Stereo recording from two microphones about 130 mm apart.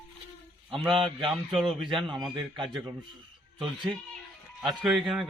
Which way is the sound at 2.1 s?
35° right (ahead or behind).